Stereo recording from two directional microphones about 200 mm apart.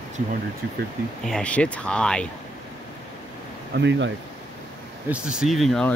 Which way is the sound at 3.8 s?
65° right (ahead or behind).